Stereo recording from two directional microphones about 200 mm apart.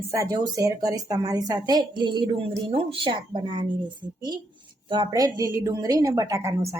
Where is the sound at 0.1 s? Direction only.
15° right (ahead or behind).